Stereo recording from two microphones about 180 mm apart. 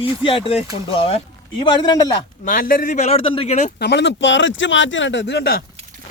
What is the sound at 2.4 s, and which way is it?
A man's voice, 50° left (ahead or behind).